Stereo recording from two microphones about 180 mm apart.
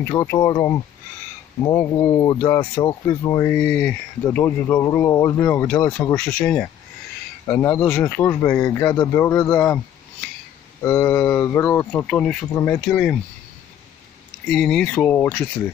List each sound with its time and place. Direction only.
0.1 s speech: 20° left (ahead or behind)
3.5 s speech: 5° left (ahead or behind)
10.8 s speech: 15° left (ahead or behind)
14.5 s speech: 5° left (ahead or behind)